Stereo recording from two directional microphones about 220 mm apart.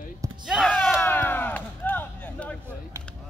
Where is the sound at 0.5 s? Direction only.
5° left (ahead or behind).